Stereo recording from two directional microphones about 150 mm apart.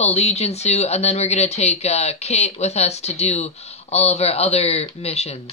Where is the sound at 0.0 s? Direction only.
45° left (ahead or behind).